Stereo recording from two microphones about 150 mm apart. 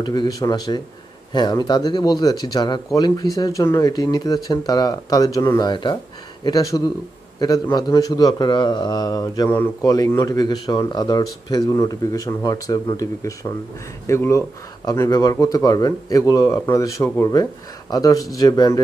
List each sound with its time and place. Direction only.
0.0 s speech: 30° left (ahead or behind)
5.6 s a man's voice: 30° left (ahead or behind)
9.5 s a man's voice: 10° left (ahead or behind)